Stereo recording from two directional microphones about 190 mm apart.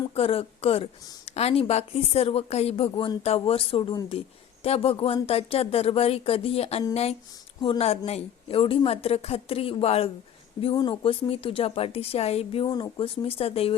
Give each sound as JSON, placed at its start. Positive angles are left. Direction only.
{"t": 0.1, "sound": "a woman's voice", "side_deg": 30}